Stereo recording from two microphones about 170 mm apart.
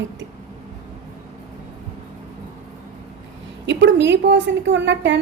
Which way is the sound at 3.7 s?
90° right.